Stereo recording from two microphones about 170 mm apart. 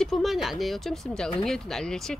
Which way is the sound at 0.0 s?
Centre (ahead or behind).